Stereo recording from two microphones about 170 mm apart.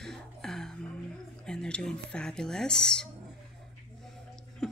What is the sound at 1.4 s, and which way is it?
Speech, 5° left (ahead or behind).